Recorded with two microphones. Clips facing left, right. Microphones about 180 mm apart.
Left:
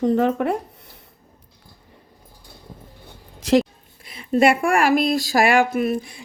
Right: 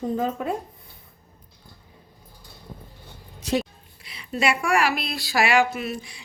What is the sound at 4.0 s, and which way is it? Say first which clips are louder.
Speech: left 8 dB; 50° left (ahead or behind).